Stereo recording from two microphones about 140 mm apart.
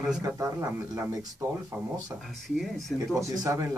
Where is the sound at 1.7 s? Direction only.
15° right (ahead or behind).